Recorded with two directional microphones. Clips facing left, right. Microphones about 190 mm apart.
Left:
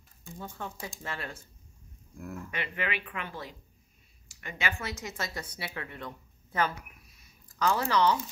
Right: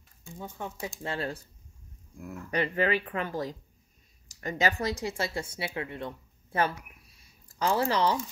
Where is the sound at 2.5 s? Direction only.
40° right (ahead or behind).